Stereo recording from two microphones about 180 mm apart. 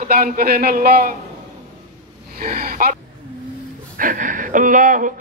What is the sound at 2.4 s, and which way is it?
Speech, 50° right (ahead or behind).